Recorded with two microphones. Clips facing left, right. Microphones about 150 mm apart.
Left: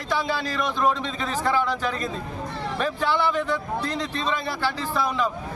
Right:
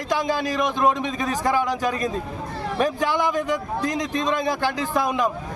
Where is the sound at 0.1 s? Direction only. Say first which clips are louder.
Right 3 dB; 15° right (ahead or behind).